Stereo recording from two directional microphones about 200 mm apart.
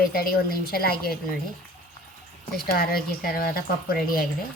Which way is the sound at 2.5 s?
50° left (ahead or behind).